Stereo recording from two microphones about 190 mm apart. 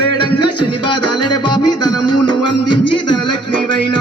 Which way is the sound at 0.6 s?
25° left (ahead or behind).